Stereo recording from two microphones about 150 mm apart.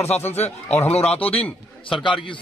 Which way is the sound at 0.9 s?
40° left (ahead or behind).